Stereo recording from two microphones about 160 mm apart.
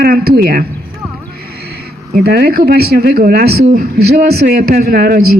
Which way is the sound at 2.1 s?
75° right (ahead or behind).